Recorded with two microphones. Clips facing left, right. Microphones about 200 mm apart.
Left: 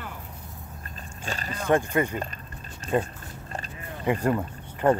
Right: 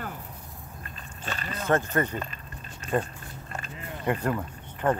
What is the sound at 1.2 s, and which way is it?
Speech, 40° left (ahead or behind).